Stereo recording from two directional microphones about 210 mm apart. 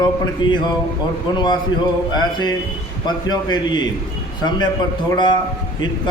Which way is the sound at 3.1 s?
20° left (ahead or behind).